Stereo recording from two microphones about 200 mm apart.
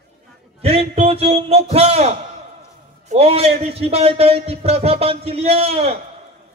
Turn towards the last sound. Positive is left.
turn(degrees=-30)  # may be behind; listen again after turning